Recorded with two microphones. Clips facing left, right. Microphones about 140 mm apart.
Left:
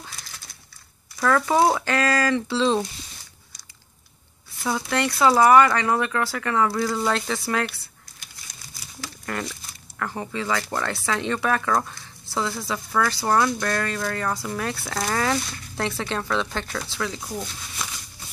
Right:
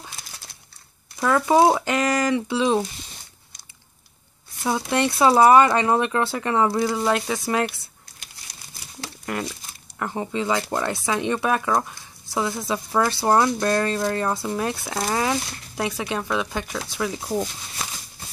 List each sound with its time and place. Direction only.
1.2 s speech: 15° right (ahead or behind)
4.6 s speech: 20° right (ahead or behind)
9.2 s speech: 15° right (ahead or behind)